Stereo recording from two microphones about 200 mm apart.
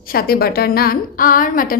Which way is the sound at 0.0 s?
45° left (ahead or behind).